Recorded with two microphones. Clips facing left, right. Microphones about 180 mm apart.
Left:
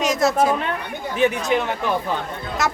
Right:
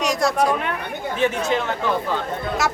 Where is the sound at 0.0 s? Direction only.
Centre (ahead or behind).